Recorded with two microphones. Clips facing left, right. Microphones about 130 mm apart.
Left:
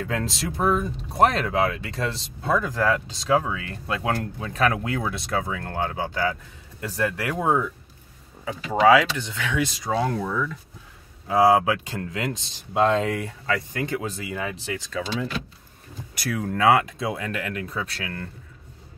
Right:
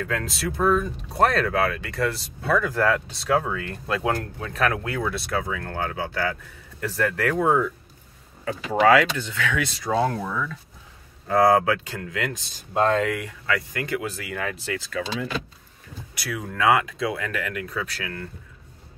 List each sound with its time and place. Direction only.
0.0 s speech: 25° left (ahead or behind)
11.2 s speech: 10° left (ahead or behind)
16.2 s speech: 45° left (ahead or behind)
16.5 s speech: 30° left (ahead or behind)